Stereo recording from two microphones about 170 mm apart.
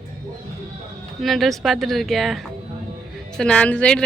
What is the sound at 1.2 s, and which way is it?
A woman's voice, centre (ahead or behind).